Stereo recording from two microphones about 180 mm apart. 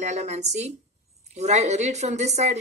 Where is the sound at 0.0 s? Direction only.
35° right (ahead or behind).